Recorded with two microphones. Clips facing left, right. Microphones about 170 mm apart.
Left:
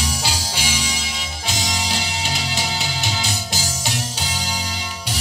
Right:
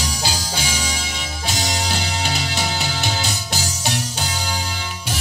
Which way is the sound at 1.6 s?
55° right (ahead or behind).